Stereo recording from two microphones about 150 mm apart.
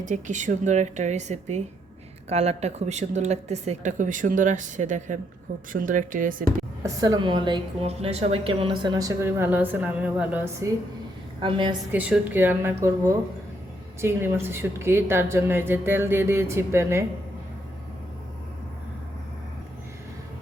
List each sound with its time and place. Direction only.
0.0 s a woman's voice: 55° right (ahead or behind)
6.8 s a woman's voice: 25° right (ahead or behind)
11.3 s a woman's voice: 35° right (ahead or behind)
11.9 s a woman's voice: 10° right (ahead or behind)